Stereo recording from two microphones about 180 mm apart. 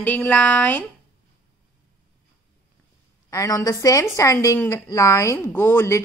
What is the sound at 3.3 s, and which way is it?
A woman's voice, 20° left (ahead or behind).